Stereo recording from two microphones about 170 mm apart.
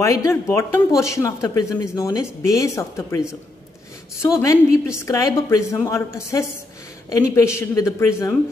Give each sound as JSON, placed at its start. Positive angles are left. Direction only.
{"t": 0.0, "sound": "speech", "side_deg": 20}
{"t": 4.2, "sound": "a woman's voice", "side_deg": 15}